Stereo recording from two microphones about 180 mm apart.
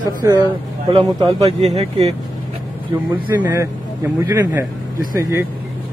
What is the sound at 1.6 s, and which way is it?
Speech, 35° right (ahead or behind).